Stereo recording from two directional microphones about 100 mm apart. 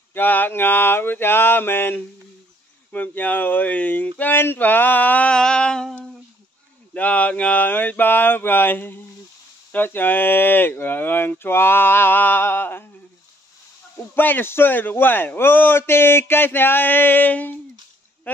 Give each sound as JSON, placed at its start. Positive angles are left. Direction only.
{"t": 0.1, "sound": "a man's voice", "side_deg": 20}
{"t": 14.1, "sound": "a man's voice", "side_deg": 20}